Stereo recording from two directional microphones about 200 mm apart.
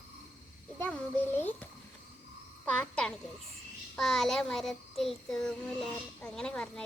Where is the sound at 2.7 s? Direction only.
5° left (ahead or behind).